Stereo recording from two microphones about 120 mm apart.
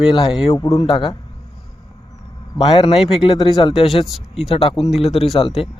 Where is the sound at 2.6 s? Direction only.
40° left (ahead or behind).